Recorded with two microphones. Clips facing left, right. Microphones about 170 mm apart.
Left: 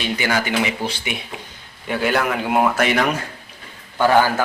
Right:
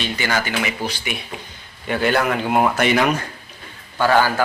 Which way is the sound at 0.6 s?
25° left (ahead or behind).